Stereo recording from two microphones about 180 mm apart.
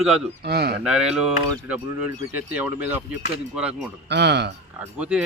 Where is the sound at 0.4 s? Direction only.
60° right (ahead or behind).